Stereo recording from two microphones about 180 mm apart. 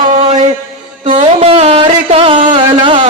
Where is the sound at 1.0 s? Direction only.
40° right (ahead or behind).